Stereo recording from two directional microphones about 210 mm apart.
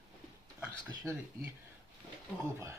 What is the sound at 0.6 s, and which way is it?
Speech, 10° right (ahead or behind).